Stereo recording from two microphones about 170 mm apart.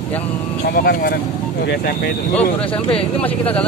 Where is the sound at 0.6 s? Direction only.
65° left (ahead or behind).